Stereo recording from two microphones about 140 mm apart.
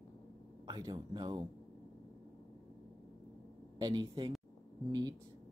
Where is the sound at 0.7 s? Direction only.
30° right (ahead or behind).